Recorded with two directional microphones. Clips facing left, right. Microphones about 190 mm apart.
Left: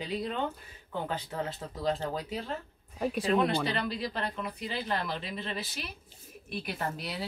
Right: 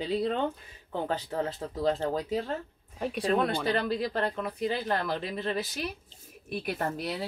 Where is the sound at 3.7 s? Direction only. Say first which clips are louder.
Right 5 dB; 50° right (ahead or behind).